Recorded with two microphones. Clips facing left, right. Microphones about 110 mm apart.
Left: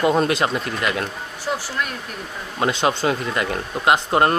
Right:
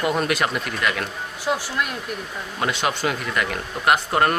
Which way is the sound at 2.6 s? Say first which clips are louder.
Left 4 dB; 30° left (ahead or behind).